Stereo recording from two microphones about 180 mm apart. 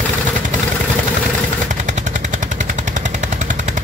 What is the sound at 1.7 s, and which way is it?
Machine gun, 40° right (ahead or behind).